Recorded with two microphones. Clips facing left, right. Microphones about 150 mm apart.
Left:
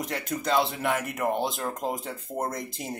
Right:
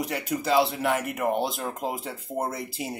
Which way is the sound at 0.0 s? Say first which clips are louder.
Right 2 dB; 5° right (ahead or behind).